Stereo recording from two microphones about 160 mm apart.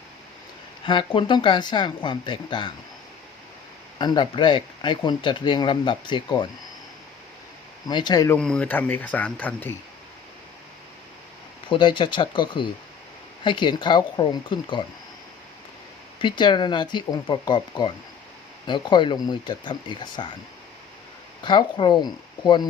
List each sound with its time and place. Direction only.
0.9 s speech: 30° left (ahead or behind)
3.9 s speech: 25° left (ahead or behind)
7.9 s speech: 25° left (ahead or behind)
8.4 s speech: 5° left (ahead or behind)
11.7 s speech: 30° left (ahead or behind)
16.1 s speech: 30° left (ahead or behind)
21.4 s speech: 30° left (ahead or behind)